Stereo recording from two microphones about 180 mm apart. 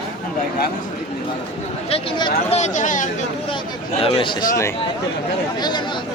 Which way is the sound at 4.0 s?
30° left (ahead or behind).